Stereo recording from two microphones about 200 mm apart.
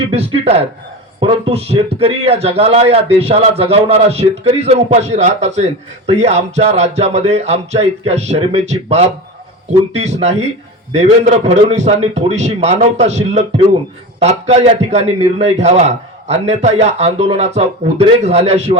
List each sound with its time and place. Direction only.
0.1 s a man's voice: 30° right (ahead or behind)